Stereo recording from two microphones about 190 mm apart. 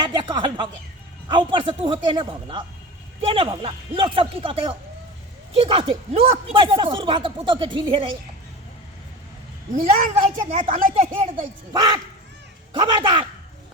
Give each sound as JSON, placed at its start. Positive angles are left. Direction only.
{"t": 0.0, "sound": "a sound", "side_deg": -25}
{"t": 1.3, "sound": "speech", "side_deg": -25}
{"t": 10.3, "sound": "speech", "side_deg": -45}
{"t": 11.0, "sound": "speech", "side_deg": -30}